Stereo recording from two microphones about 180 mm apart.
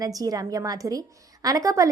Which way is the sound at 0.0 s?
20° right (ahead or behind).